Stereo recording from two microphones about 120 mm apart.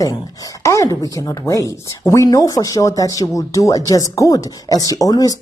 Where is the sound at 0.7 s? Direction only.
30° left (ahead or behind).